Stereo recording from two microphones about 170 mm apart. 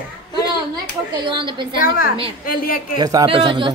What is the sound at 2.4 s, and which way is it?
Speech, 60° left (ahead or behind).